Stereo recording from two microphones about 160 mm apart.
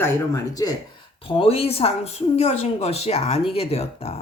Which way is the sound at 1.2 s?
35° left (ahead or behind).